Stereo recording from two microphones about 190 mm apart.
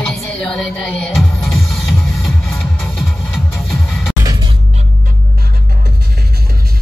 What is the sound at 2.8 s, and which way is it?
Music, centre (ahead or behind).